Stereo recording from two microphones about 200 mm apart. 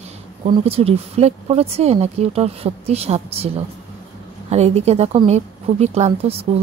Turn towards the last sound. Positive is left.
turn(degrees=-30)  # may be behind; listen again after turning